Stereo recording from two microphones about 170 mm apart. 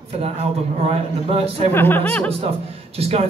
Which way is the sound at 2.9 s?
35° right (ahead or behind).